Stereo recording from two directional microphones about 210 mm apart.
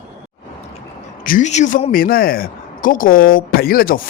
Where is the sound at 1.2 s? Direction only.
40° left (ahead or behind).